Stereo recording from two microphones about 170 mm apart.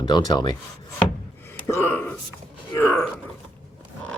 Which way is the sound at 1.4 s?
15° left (ahead or behind).